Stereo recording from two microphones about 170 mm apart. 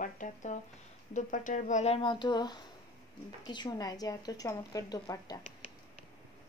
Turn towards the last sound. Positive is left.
turn(degrees=20)  # may be behind; listen again after turning